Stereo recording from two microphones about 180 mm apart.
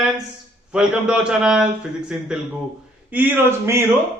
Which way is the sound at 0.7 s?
5° right (ahead or behind).